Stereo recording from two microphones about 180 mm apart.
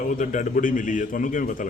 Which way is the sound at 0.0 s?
45° left (ahead or behind).